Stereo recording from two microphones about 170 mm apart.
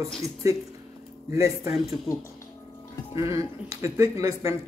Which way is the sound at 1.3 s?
15° right (ahead or behind).